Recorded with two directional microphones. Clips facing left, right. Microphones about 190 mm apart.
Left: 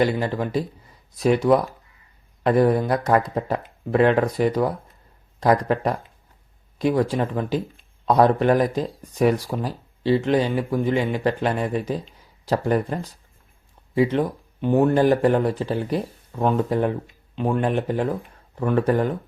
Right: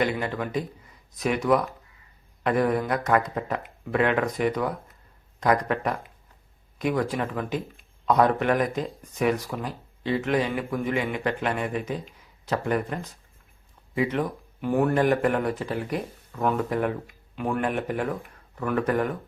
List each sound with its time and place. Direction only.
0.0 s speech: 35° left (ahead or behind)